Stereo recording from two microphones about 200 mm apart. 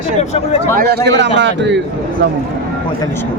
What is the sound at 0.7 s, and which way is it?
A man's voice, 55° right (ahead or behind).